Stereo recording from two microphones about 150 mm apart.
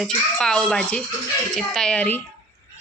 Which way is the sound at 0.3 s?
5° left (ahead or behind).